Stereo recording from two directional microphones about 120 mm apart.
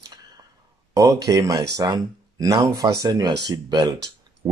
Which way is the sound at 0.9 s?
30° right (ahead or behind).